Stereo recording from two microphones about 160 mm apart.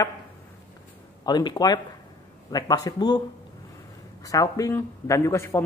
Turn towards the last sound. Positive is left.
turn(degrees=15)  # may be behind; listen again after turning